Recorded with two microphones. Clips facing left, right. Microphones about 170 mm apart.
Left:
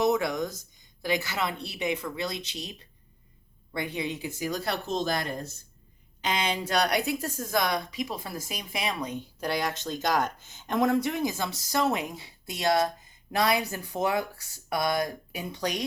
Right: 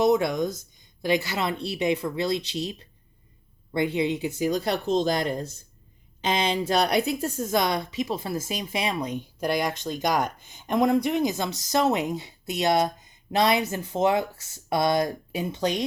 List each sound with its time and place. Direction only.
0.0 s speech: 25° right (ahead or behind)
9.0 s speech: 15° right (ahead or behind)